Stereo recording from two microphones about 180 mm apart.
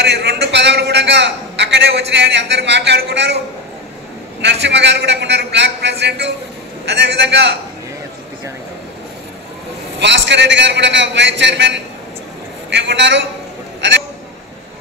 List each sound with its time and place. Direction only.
0.0 s a man's voice: 70° right (ahead or behind)
4.4 s a man's voice: 75° right (ahead or behind)
9.9 s a man's voice: 80° right